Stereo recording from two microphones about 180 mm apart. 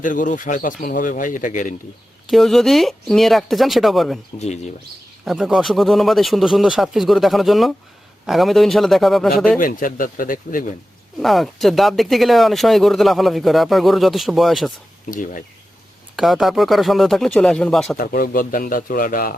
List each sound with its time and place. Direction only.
0.0 s speech: 45° left (ahead or behind)
2.3 s speech: centre (ahead or behind)
4.4 s speech: 40° left (ahead or behind)
5.2 s speech: centre (ahead or behind)
9.6 s speech: 50° left (ahead or behind)
11.2 s speech: centre (ahead or behind)
15.1 s speech: 45° left (ahead or behind)
16.1 s speech: centre (ahead or behind)
17.9 s speech: 50° left (ahead or behind)